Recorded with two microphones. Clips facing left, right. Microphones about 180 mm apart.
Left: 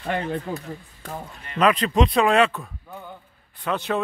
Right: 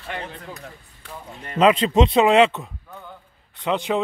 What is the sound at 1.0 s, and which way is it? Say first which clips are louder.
Speech: left 5 dB; 45° left (ahead or behind).